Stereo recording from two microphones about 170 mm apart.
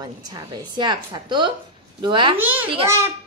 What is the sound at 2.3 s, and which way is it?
Speech, 10° right (ahead or behind).